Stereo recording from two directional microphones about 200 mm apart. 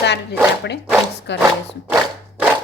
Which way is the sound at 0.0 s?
60° left (ahead or behind).